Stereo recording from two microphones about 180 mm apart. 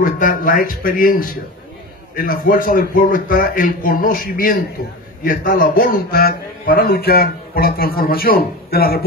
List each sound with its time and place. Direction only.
0.0 s a man's voice: 50° left (ahead or behind)